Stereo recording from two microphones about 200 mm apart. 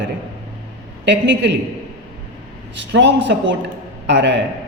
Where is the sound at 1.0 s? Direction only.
60° right (ahead or behind).